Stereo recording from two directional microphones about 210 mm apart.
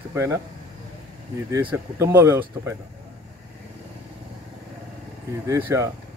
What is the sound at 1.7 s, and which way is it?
Speech, 10° right (ahead or behind).